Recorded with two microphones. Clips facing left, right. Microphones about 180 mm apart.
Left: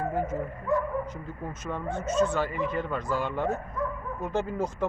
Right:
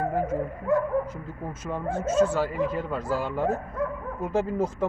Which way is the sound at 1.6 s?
5° right (ahead or behind).